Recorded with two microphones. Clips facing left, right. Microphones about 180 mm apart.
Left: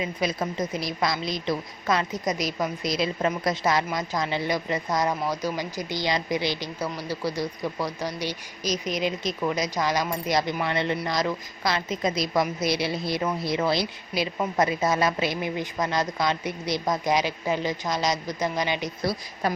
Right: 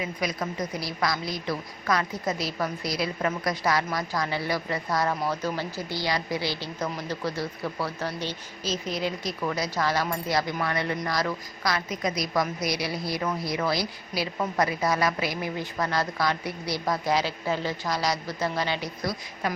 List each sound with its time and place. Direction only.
0.0 s a woman's voice: 25° left (ahead or behind)
19.0 s speech: 35° left (ahead or behind)